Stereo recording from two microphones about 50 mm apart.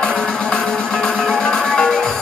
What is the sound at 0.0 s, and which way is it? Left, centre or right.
Music, centre.